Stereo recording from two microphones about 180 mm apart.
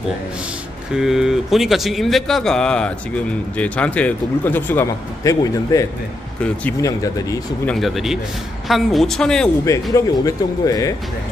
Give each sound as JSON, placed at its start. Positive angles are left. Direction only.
{"t": 0.9, "sound": "a man's voice", "side_deg": 0}
{"t": 7.6, "sound": "speech", "side_deg": 0}
{"t": 9.9, "sound": "speech", "side_deg": 20}